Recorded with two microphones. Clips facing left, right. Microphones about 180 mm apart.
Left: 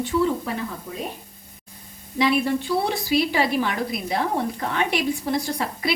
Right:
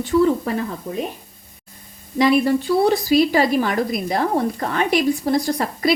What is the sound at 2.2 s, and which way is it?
A woman's voice, 40° right (ahead or behind).